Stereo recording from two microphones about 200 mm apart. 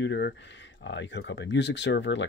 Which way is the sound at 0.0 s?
60° left (ahead or behind).